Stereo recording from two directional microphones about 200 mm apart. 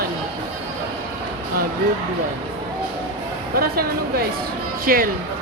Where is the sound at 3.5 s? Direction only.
50° right (ahead or behind).